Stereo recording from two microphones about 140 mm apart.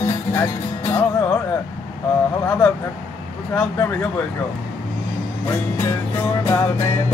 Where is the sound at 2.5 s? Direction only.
5° left (ahead or behind).